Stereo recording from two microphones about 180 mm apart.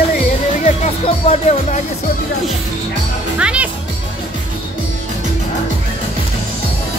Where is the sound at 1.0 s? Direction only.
35° left (ahead or behind).